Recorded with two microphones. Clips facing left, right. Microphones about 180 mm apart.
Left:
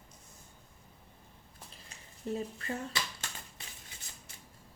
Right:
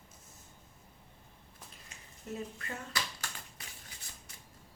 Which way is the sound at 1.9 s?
30° left (ahead or behind).